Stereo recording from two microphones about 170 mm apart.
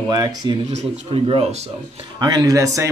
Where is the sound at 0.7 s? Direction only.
35° right (ahead or behind).